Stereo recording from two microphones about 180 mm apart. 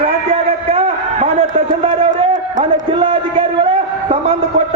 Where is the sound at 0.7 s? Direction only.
35° right (ahead or behind).